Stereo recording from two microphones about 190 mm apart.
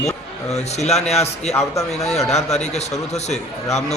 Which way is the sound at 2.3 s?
35° left (ahead or behind).